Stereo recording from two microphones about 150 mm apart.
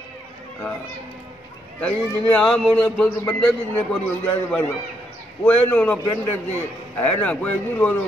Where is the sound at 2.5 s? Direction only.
5° left (ahead or behind).